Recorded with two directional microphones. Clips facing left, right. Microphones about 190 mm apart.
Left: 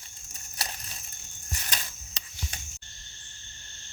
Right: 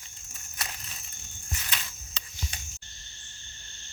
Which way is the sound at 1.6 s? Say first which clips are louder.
Left 2 dB; 40° left (ahead or behind).